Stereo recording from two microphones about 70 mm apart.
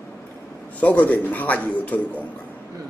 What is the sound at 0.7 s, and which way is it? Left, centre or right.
Speech, left.